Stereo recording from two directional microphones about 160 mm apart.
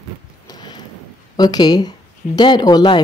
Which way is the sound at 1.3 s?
25° left (ahead or behind).